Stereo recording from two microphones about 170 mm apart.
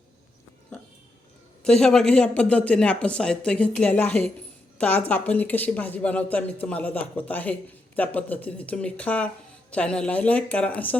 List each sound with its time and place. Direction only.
1.6 s a woman's voice: 5° left (ahead or behind)